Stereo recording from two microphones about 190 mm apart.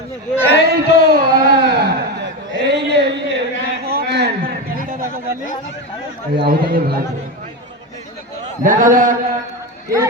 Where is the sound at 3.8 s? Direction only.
55° right (ahead or behind).